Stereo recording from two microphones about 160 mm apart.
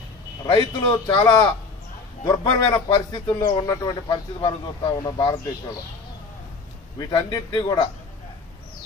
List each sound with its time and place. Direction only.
0.4 s speech: 25° left (ahead or behind)
7.0 s speech: 25° left (ahead or behind)